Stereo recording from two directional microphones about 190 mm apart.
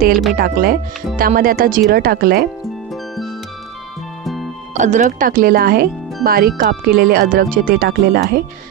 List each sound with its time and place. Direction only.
0.4 s speech: 50° right (ahead or behind)
2.9 s music: centre (ahead or behind)
4.7 s speech: 40° right (ahead or behind)